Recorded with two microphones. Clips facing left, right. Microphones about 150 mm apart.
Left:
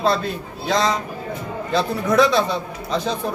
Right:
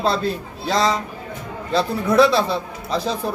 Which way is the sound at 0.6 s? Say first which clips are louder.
Even; 35° right (ahead or behind).